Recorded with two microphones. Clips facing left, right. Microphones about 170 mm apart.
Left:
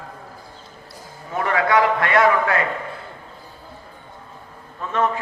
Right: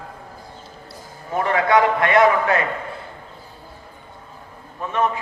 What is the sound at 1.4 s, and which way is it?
Speech, 30° right (ahead or behind).